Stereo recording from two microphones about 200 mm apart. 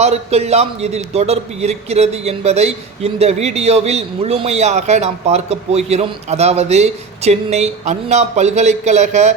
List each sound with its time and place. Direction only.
0.0 s a man's voice: 35° right (ahead or behind)